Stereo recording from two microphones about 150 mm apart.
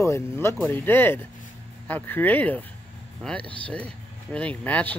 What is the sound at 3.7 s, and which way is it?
Speech, 10° left (ahead or behind).